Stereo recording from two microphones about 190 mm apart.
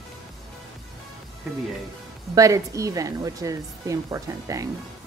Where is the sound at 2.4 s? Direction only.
15° right (ahead or behind).